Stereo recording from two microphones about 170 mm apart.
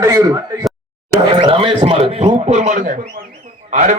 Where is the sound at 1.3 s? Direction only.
30° right (ahead or behind).